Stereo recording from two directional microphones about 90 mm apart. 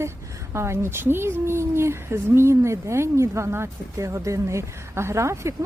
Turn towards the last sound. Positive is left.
turn(degrees=-30)  # may be behind; listen again after turning